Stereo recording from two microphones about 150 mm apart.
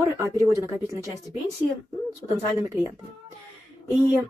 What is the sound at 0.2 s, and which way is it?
Speech, 20° right (ahead or behind).